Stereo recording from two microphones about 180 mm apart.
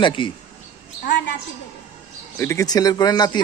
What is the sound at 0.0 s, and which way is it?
Speech, 25° left (ahead or behind).